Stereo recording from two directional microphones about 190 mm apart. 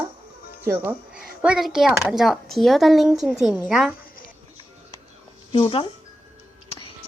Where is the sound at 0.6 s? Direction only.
10° right (ahead or behind).